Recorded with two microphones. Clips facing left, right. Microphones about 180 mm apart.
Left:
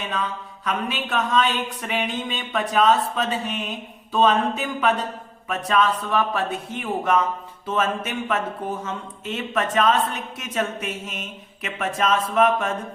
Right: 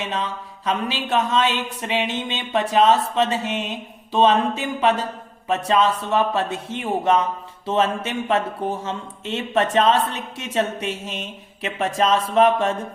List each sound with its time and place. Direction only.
0.0 s a woman's voice: 25° right (ahead or behind)